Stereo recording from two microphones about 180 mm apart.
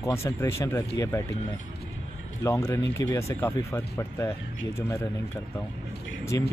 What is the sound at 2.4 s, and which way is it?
Speech, 15° left (ahead or behind).